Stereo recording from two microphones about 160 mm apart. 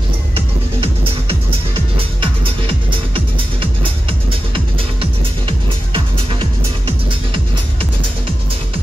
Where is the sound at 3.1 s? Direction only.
35° right (ahead or behind).